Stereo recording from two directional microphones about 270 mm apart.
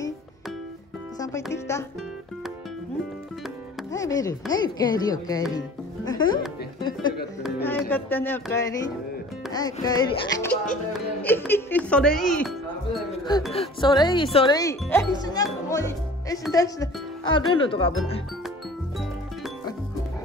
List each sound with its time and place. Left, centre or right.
1.2 s speech: centre
3.9 s speech: centre
13.5 s speech: centre